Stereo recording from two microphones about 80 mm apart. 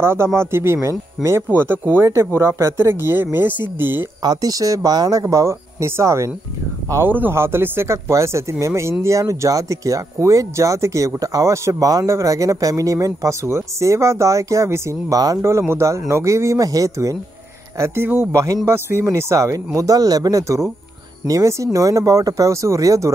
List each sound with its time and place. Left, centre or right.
0.0 s speech: right
4.2 s speech: right
7.1 s speech: right
15.7 s speech: right
17.7 s speech: right